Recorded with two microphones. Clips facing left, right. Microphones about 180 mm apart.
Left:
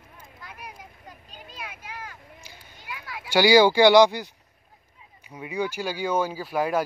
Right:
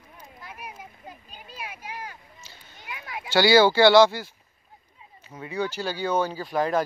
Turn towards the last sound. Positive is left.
turn(degrees=10)  # may be behind; listen again after turning